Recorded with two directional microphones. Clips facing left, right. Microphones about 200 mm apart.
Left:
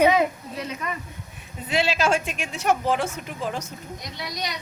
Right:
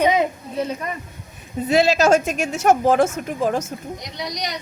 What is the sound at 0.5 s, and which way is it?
Speech, 30° right (ahead or behind).